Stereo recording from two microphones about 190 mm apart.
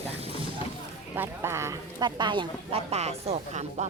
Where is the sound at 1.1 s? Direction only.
15° right (ahead or behind).